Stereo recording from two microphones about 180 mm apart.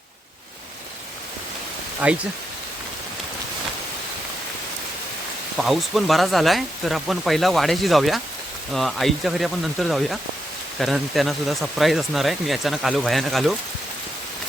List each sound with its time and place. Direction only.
2.0 s speech: 10° right (ahead or behind)
5.5 s speech: centre (ahead or behind)